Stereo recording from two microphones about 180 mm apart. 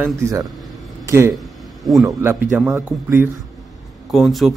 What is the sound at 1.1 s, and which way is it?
Speech, 15° right (ahead or behind).